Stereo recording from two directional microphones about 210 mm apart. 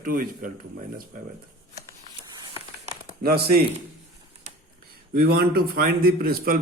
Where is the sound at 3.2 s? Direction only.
45° right (ahead or behind).